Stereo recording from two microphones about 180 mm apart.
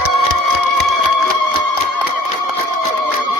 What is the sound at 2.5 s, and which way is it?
Music, 30° left (ahead or behind).